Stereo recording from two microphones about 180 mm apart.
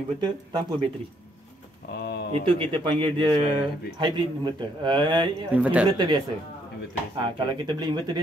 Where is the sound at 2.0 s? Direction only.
60° left (ahead or behind).